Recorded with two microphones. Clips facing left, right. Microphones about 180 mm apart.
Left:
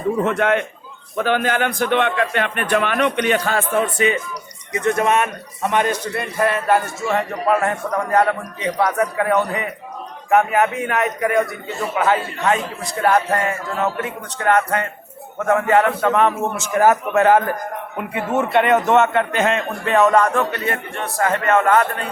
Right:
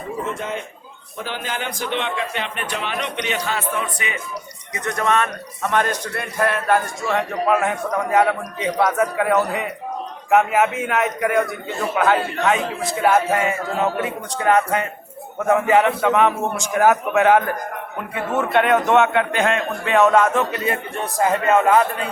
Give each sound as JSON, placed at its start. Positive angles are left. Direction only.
{"t": 0.3, "sound": "a man's voice", "side_deg": 70}
{"t": 1.1, "sound": "a man's voice", "side_deg": 60}
{"t": 4.7, "sound": "a man's voice", "side_deg": 25}
{"t": 5.7, "sound": "a man's voice", "side_deg": 5}
{"t": 20.7, "sound": "a man's voice", "side_deg": -15}